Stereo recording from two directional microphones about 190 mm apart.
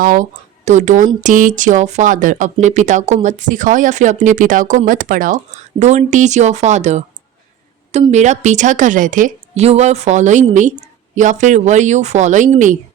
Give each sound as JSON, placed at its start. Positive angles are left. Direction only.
{"t": 0.0, "sound": "speech", "side_deg": -45}
{"t": 8.1, "sound": "speech", "side_deg": -40}